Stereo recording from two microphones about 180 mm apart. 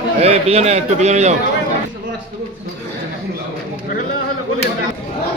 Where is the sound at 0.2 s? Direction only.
35° right (ahead or behind).